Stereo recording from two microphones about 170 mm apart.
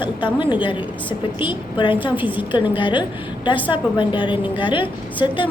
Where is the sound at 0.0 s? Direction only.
30° left (ahead or behind).